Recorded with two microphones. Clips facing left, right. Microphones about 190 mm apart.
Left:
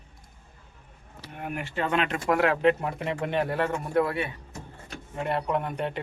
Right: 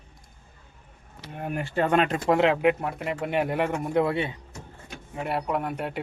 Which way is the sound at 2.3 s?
20° right (ahead or behind).